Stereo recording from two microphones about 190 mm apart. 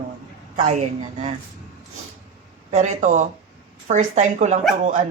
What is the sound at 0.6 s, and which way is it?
Speech, 35° right (ahead or behind).